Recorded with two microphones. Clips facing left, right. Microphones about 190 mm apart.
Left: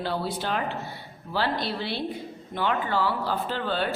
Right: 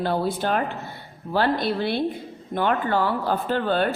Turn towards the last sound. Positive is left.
turn(degrees=-50)  # may be behind; listen again after turning